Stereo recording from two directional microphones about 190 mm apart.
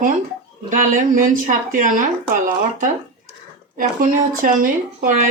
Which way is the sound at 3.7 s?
45° right (ahead or behind).